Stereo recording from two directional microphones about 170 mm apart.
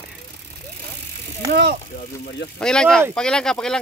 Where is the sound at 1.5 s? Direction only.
60° right (ahead or behind).